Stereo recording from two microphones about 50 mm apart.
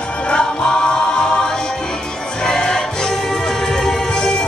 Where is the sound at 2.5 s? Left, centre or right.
Centre.